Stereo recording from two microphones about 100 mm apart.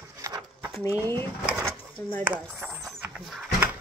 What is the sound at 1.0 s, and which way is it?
Speech, 25° left (ahead or behind).